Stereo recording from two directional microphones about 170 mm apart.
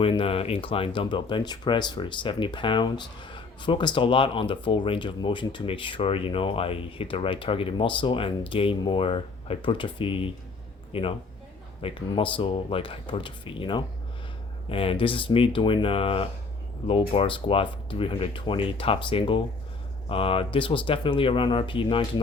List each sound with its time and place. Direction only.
0.0 s speech: 30° left (ahead or behind)